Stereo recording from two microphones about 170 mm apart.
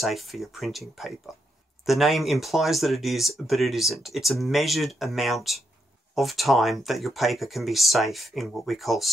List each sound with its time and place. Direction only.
0.0 s speech: centre (ahead or behind)